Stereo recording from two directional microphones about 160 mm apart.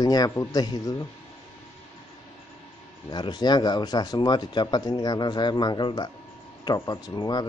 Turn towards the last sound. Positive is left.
turn(degrees=25)  # may be behind; listen again after turning